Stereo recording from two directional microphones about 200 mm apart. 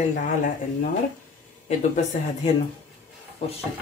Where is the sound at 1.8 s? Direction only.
30° left (ahead or behind).